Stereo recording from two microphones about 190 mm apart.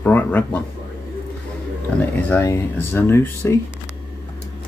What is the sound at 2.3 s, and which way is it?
Speech, 15° left (ahead or behind).